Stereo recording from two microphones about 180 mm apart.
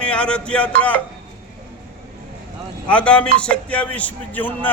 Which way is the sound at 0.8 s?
10° left (ahead or behind).